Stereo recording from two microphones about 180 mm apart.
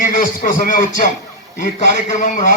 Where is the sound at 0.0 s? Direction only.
50° left (ahead or behind).